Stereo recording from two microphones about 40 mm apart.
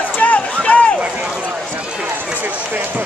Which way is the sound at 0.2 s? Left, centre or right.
Left.